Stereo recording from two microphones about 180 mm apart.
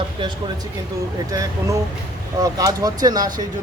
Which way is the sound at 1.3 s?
20° right (ahead or behind).